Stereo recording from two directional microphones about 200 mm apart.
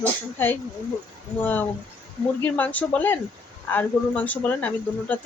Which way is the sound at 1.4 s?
10° left (ahead or behind).